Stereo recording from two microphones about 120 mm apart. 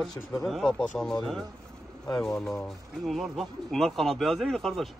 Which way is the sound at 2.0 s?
5° left (ahead or behind).